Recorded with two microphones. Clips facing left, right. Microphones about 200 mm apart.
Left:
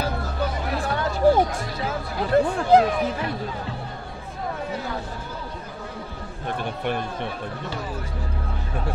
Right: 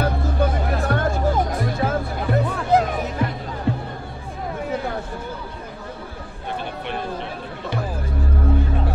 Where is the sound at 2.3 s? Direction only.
30° left (ahead or behind).